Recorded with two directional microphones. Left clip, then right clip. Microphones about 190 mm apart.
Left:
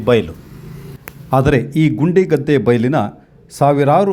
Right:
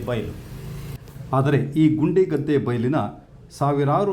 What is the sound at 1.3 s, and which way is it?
A man's voice, 30° left (ahead or behind).